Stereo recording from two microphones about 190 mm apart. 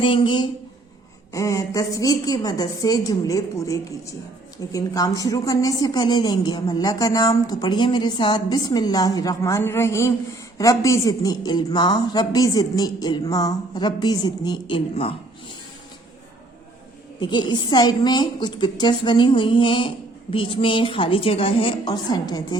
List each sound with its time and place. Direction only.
0.0 s a woman's voice: 25° left (ahead or behind)
17.2 s a woman's voice: 25° left (ahead or behind)